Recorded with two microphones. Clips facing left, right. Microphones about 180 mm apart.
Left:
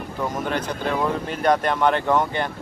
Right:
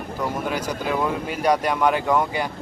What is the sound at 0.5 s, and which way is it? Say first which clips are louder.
Speech: even; 10° right (ahead or behind).